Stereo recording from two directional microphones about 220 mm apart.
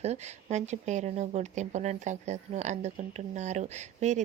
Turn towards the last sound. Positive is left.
turn(degrees=-30)  # may be behind; listen again after turning